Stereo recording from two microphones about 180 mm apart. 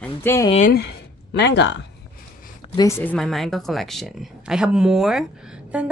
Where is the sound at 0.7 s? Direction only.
70° left (ahead or behind).